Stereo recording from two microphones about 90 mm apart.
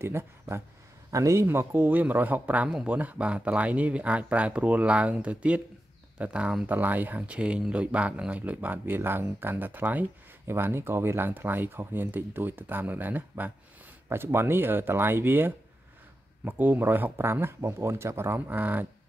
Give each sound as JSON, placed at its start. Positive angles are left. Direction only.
{"t": 0.0, "sound": "speech", "side_deg": -25}